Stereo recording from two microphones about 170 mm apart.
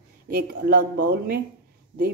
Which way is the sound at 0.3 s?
60° right (ahead or behind).